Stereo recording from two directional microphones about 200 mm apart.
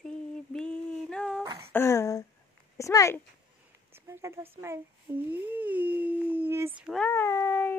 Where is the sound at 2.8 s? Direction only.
15° left (ahead or behind).